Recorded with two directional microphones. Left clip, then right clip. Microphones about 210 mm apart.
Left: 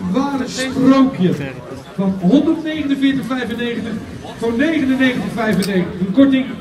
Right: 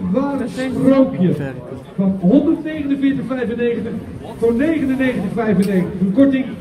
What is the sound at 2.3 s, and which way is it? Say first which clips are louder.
A man's voice: even; 50° left (ahead or behind).